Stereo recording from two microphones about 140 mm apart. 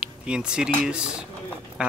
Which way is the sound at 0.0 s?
5° right (ahead or behind).